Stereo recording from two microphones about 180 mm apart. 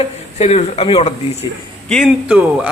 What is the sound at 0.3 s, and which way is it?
Speech, 35° left (ahead or behind).